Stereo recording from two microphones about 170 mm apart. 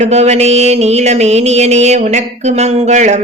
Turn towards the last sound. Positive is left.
turn(degrees=-45)  # may be behind; listen again after turning